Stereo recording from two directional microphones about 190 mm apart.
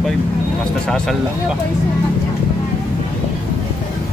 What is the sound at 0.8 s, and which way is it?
Speech, 5° left (ahead or behind).